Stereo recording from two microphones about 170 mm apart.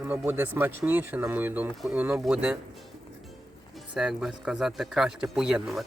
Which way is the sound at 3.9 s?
5° right (ahead or behind).